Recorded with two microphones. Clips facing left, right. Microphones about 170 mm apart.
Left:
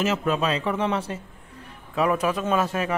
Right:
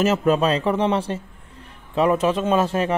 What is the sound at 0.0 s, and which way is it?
A man's voice, 40° right (ahead or behind).